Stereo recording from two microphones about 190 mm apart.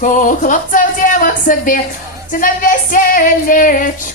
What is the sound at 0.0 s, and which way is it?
Female singing, 45° left (ahead or behind).